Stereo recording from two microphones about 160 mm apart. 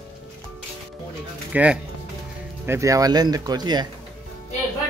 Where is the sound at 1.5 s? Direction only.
10° right (ahead or behind); by 3.8 s 25° right (ahead or behind).